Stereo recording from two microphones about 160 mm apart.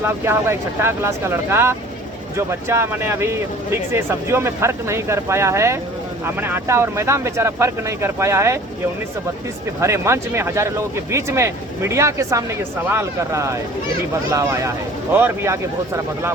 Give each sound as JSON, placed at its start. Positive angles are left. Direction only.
{"t": 0.0, "sound": "speech", "side_deg": -15}
{"t": 9.8, "sound": "speech", "side_deg": -15}